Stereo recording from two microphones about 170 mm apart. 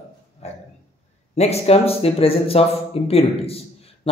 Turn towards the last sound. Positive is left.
turn(degrees=35)  # may be behind; listen again after turning